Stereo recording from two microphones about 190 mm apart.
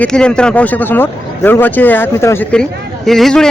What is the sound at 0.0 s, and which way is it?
Speech, 5° left (ahead or behind).